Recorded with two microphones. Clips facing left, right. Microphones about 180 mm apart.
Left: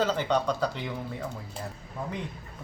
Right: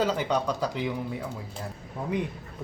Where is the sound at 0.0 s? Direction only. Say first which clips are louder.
Even; 10° right (ahead or behind).